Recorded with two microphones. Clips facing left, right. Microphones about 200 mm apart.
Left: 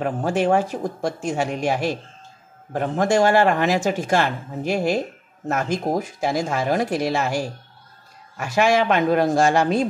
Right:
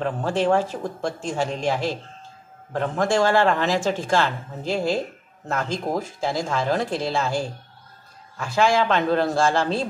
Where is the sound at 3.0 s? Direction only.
20° left (ahead or behind).